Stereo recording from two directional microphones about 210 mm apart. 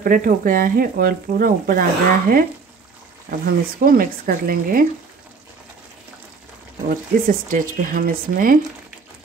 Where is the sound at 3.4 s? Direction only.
45° right (ahead or behind).